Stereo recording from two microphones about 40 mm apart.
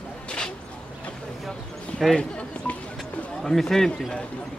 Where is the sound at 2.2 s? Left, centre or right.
Left.